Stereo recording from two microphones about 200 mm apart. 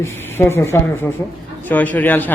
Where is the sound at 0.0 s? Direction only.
10° left (ahead or behind).